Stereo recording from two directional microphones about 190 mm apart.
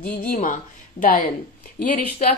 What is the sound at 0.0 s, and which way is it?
Speech, 50° left (ahead or behind).